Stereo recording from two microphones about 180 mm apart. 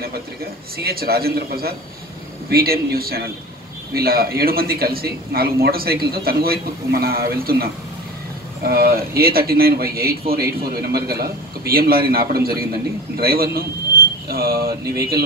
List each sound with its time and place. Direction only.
0.7 s a man's voice: 60° right (ahead or behind)